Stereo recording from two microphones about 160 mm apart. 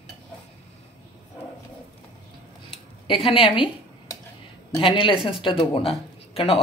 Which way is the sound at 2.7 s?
35° left (ahead or behind).